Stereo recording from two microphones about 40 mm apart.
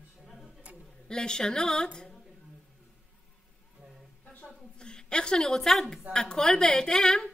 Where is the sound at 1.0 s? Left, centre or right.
Centre.